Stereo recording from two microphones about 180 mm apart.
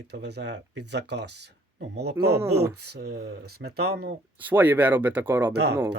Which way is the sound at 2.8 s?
65° right (ahead or behind).